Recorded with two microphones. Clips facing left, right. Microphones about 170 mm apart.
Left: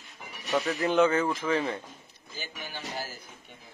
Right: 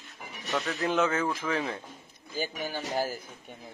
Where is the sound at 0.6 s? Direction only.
Centre (ahead or behind).